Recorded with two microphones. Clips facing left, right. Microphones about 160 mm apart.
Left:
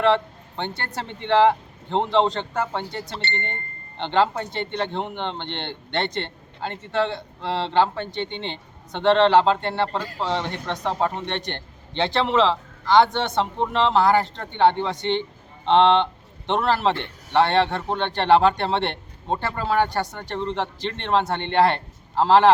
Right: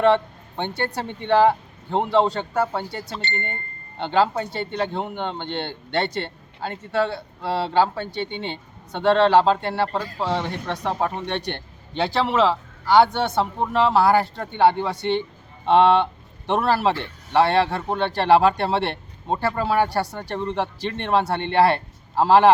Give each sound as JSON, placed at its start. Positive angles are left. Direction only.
{"t": 0.0, "sound": "a man's voice", "side_deg": -15}